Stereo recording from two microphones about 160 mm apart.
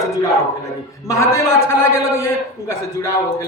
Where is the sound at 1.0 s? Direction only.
20° left (ahead or behind).